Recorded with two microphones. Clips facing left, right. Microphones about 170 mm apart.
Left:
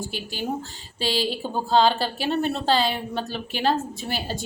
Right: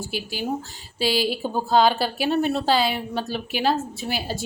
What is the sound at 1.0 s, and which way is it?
Speech, 10° right (ahead or behind).